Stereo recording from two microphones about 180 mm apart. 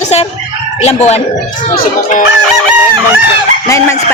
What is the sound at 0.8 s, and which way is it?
Speech, 35° left (ahead or behind).